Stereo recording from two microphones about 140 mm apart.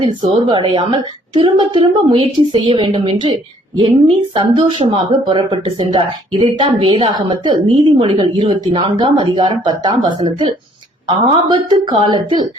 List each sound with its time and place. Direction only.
0.0 s a woman's voice: 35° right (ahead or behind)
11.2 s a woman's voice: 35° right (ahead or behind)